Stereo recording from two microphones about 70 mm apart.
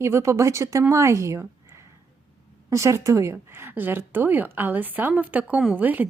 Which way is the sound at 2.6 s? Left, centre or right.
Right.